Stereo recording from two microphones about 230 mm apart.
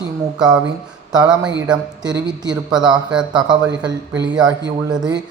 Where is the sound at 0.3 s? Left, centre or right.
Centre.